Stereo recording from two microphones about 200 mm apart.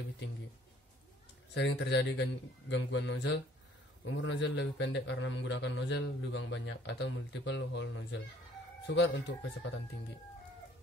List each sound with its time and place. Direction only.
1.5 s a man's voice: 65° left (ahead or behind)